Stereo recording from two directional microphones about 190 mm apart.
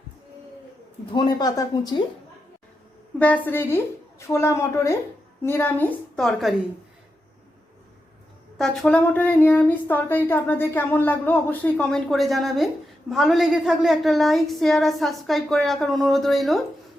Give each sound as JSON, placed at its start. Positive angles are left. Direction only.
{"t": 1.1, "sound": "speech", "side_deg": 25}
{"t": 3.2, "sound": "a woman's voice", "side_deg": 10}
{"t": 8.5, "sound": "speech", "side_deg": 0}